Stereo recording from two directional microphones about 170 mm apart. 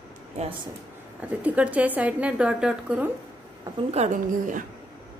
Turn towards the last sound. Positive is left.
turn(degrees=-50)  # may be behind; listen again after turning